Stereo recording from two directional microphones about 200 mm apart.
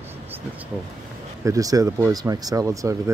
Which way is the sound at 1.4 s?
15° right (ahead or behind).